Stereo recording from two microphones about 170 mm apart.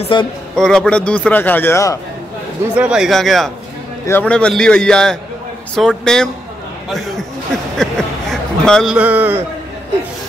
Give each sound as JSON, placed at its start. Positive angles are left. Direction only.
{"t": 0.1, "sound": "a man's voice", "side_deg": 25}
{"t": 0.6, "sound": "a man's voice", "side_deg": 0}
{"t": 2.7, "sound": "a man's voice", "side_deg": -5}
{"t": 7.7, "sound": "a sound", "side_deg": 5}
{"t": 8.9, "sound": "a man's voice", "side_deg": -10}